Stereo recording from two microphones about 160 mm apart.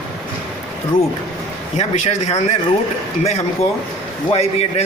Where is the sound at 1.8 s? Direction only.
45° left (ahead or behind).